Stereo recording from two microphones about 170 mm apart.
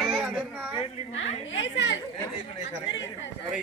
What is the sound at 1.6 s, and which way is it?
Speech, 90° left.